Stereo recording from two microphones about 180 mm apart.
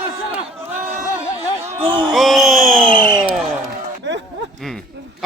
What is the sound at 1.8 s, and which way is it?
Music, 30° right (ahead or behind).